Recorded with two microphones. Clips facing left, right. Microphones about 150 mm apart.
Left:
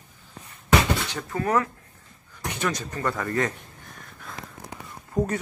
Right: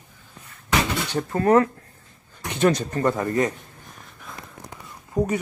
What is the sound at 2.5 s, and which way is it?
Speech, 25° right (ahead or behind).